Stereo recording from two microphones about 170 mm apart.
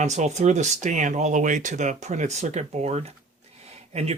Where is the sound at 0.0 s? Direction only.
45° right (ahead or behind).